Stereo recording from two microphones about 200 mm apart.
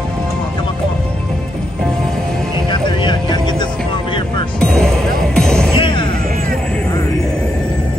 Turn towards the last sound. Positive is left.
turn(degrees=25)  # may be behind; listen again after turning